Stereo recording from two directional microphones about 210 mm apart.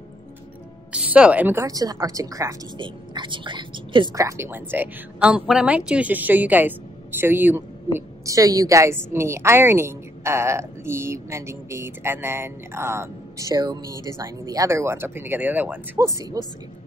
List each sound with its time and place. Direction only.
0.9 s a woman's voice: 5° right (ahead or behind)